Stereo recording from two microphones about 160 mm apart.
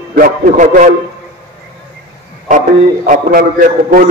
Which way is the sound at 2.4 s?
55° right (ahead or behind).